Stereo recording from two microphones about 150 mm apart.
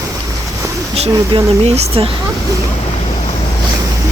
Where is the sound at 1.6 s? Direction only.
45° right (ahead or behind).